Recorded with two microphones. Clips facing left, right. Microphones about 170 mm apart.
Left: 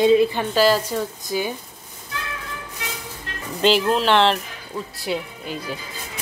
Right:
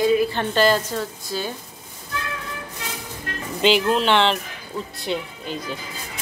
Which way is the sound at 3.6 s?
Centre (ahead or behind).